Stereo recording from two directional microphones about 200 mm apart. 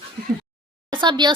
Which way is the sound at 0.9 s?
25° right (ahead or behind).